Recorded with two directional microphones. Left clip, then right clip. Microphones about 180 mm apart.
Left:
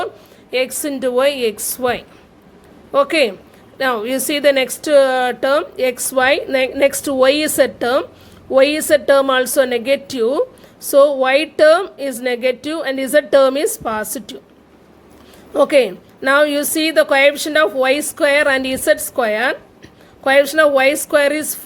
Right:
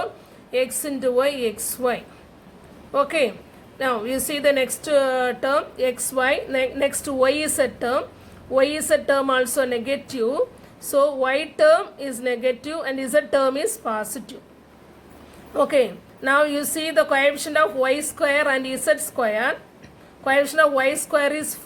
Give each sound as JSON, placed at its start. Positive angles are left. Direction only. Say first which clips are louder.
{"t": 0.5, "sound": "a woman's voice", "louder": "left 4 dB", "side_deg": 50}
{"t": 15.5, "sound": "a woman's voice", "louder": "left 6 dB", "side_deg": 50}